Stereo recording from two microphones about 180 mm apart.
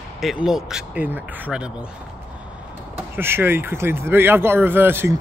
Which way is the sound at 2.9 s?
10° right (ahead or behind).